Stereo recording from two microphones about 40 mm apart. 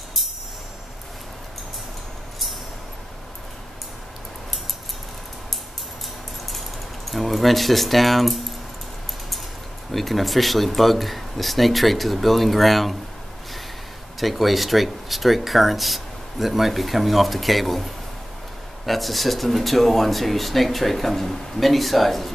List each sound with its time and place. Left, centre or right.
7.1 s speech: centre
9.9 s speech: centre
14.2 s speech: centre